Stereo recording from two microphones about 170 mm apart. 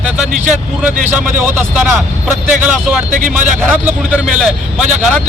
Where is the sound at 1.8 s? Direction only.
10° right (ahead or behind).